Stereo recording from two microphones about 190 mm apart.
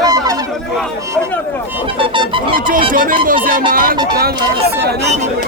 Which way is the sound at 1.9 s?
25° right (ahead or behind).